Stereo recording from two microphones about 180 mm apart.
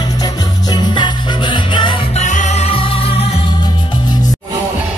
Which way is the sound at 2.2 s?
40° left (ahead or behind).